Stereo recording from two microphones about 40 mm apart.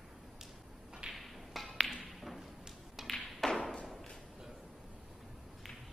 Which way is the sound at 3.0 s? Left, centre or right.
Centre.